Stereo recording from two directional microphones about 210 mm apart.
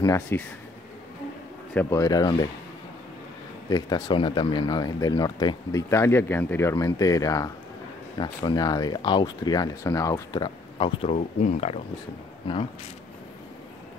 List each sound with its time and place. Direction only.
0.0 s speech: 15° left (ahead or behind)
1.7 s speech: 10° left (ahead or behind)
3.7 s speech: 20° left (ahead or behind)